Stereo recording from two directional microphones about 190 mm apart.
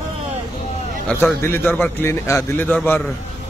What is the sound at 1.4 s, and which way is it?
A man's voice, 10° left (ahead or behind).